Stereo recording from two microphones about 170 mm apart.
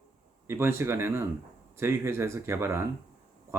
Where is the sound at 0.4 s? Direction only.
15° right (ahead or behind).